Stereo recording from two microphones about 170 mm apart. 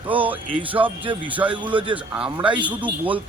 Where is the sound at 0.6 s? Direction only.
10° right (ahead or behind).